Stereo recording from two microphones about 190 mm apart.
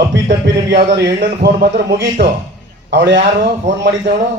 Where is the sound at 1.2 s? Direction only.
45° right (ahead or behind).